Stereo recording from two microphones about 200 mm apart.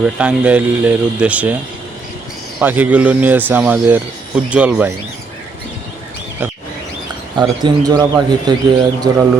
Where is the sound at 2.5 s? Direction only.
10° right (ahead or behind).